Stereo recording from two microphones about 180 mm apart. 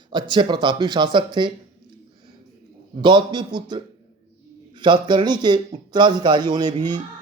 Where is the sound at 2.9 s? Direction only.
25° right (ahead or behind).